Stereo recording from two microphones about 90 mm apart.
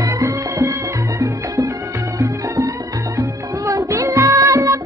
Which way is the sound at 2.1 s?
40° right (ahead or behind).